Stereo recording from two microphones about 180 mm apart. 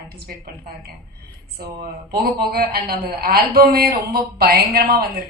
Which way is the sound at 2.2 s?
60° right (ahead or behind).